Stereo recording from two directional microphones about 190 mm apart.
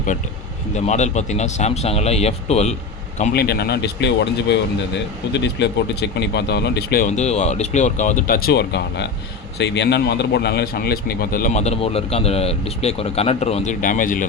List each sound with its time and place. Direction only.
0.9 s speech: 35° left (ahead or behind)
3.3 s speech: 60° left (ahead or behind)
7.1 s a man's voice: 35° left (ahead or behind)